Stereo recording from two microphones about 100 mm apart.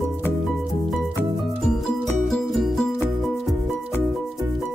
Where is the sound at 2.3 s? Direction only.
Centre (ahead or behind).